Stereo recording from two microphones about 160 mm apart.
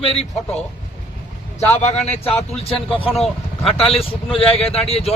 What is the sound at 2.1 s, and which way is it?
Speech, 40° left (ahead or behind).